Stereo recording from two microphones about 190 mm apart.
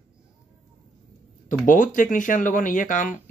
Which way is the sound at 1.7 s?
45° left (ahead or behind).